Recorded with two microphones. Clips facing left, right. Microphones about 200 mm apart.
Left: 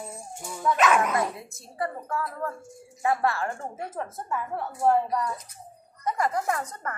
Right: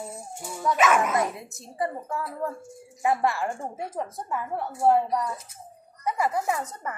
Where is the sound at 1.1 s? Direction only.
20° right (ahead or behind).